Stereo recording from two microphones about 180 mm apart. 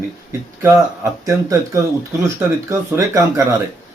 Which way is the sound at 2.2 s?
15° right (ahead or behind).